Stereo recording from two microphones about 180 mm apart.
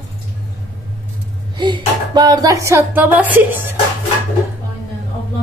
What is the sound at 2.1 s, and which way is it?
Music, 25° right (ahead or behind).